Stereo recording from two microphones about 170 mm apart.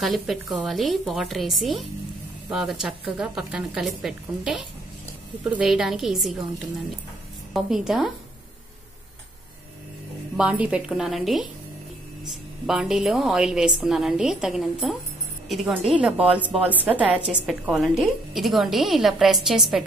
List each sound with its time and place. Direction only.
0.0 s a woman's voice: centre (ahead or behind)
10.3 s a woman's voice: 5° right (ahead or behind)